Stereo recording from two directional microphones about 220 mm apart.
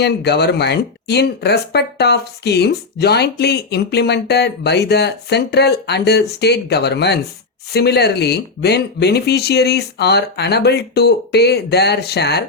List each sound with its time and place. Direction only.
0.0 s speech: 50° left (ahead or behind)